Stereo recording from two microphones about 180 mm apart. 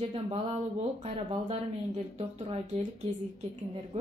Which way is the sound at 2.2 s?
35° right (ahead or behind).